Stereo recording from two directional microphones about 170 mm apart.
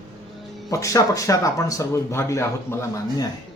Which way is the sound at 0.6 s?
20° left (ahead or behind).